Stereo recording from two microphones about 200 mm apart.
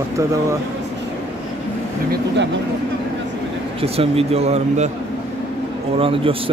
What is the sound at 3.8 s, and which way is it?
Speech, 30° right (ahead or behind).